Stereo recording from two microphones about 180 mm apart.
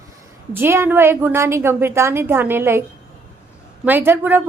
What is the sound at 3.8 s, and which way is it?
Speech, 10° right (ahead or behind).